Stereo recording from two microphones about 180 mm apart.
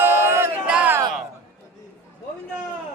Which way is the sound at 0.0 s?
15° right (ahead or behind).